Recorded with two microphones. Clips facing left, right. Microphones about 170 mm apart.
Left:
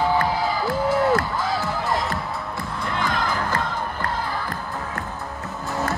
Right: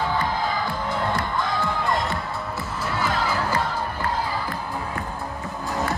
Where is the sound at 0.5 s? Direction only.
5° left (ahead or behind).